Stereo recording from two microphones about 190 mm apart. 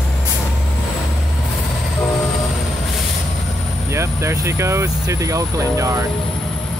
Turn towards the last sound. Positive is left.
turn(degrees=-15)  # may be behind; listen again after turning